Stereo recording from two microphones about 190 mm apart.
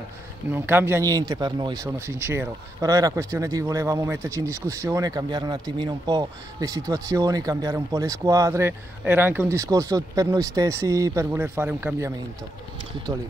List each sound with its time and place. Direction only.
0.6 s speech: 10° right (ahead or behind)
13.1 s speech: 15° right (ahead or behind)